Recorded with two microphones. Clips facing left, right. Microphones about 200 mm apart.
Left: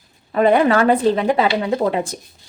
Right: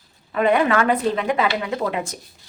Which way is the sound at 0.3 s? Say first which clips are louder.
Left 4 dB; 35° left (ahead or behind).